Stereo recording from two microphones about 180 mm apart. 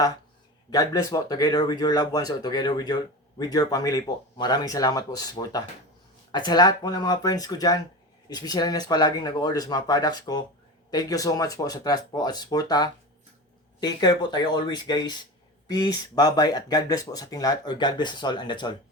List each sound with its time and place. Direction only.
0.7 s speech: 20° left (ahead or behind)